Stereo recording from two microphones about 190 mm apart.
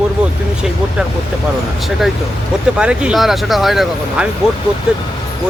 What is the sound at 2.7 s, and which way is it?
Speech, 5° right (ahead or behind).